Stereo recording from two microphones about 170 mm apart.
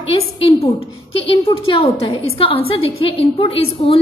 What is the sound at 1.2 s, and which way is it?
A woman's voice, 30° left (ahead or behind).